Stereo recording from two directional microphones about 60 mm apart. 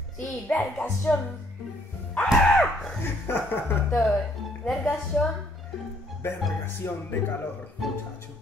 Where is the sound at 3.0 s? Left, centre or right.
Left.